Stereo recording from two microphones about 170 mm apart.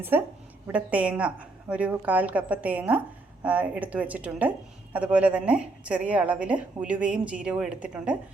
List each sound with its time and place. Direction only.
0.1 s a woman's voice: 10° right (ahead or behind)